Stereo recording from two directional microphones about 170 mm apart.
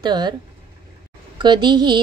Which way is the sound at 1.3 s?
25° right (ahead or behind).